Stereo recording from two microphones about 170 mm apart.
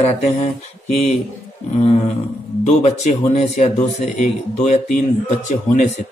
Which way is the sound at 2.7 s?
45° left (ahead or behind).